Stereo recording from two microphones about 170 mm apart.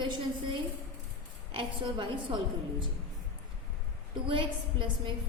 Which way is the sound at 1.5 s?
30° right (ahead or behind).